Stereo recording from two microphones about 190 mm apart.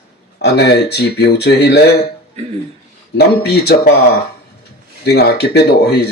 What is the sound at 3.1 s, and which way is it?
Speech, 60° left (ahead or behind).